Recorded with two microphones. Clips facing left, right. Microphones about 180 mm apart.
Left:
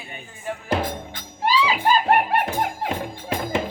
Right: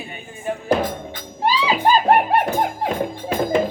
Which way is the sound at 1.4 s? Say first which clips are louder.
Right 2 dB; 35° right (ahead or behind).